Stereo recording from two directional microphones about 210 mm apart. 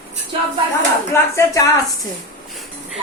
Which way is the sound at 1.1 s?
15° left (ahead or behind).